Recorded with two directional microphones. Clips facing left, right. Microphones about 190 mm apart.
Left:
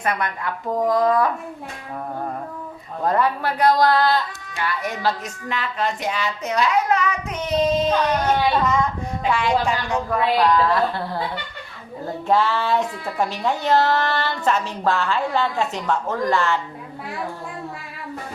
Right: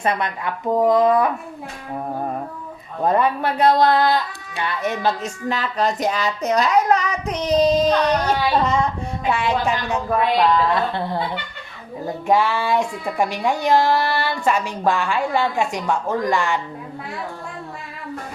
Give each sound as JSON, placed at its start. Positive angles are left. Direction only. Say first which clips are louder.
{"t": 0.0, "sound": "speech", "louder": "right 2 dB", "side_deg": -25}
{"t": 3.0, "sound": "speech", "louder": "right 2 dB", "side_deg": -20}
{"t": 5.5, "sound": "a child's voice", "louder": "right 3 dB", "side_deg": -40}
{"t": 12.3, "sound": "a child's voice", "louder": "right 1 dB", "side_deg": -15}